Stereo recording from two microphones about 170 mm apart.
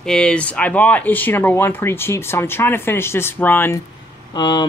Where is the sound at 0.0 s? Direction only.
5° left (ahead or behind).